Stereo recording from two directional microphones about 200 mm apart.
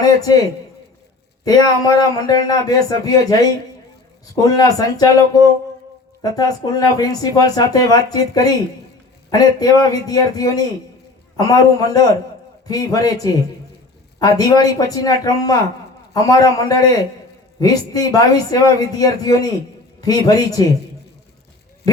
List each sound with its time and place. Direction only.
0.0 s a man's voice: 20° left (ahead or behind)
1.5 s a man's voice: 20° left (ahead or behind)